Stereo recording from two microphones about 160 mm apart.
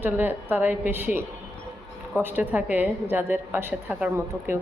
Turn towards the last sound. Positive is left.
turn(degrees=-15)  # may be behind; listen again after turning